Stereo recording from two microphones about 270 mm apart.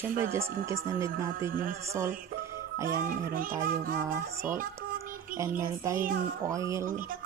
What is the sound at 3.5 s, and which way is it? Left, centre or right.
Music, centre.